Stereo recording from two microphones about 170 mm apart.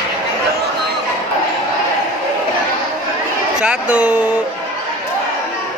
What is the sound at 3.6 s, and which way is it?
Speech, 5° right (ahead or behind).